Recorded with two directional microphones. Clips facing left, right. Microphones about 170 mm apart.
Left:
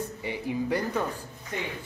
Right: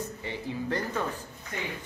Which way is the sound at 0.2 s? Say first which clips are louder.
Left 7 dB; 15° left (ahead or behind).